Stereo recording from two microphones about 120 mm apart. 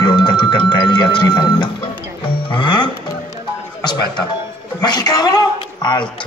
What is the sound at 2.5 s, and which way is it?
Music, 40° left (ahead or behind).